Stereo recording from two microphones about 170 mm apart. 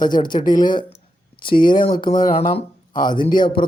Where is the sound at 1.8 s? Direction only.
30° left (ahead or behind).